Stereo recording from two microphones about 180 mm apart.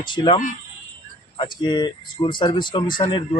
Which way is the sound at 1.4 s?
25° left (ahead or behind).